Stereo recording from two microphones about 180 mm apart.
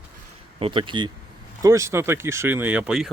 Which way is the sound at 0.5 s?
30° right (ahead or behind).